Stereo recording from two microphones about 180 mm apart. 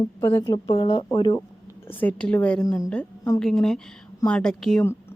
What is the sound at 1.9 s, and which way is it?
Speech, 10° left (ahead or behind).